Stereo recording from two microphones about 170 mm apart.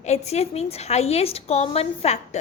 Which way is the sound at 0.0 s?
40° left (ahead or behind).